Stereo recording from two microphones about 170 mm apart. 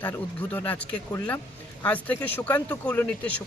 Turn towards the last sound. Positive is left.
turn(degrees=10)  # may be behind; listen again after turning